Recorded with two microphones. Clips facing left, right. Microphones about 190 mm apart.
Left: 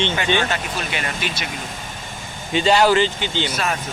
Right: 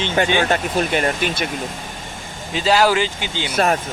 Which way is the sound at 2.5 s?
Centre (ahead or behind).